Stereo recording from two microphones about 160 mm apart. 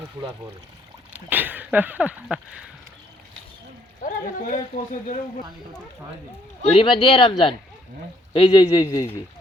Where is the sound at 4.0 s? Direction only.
60° left (ahead or behind).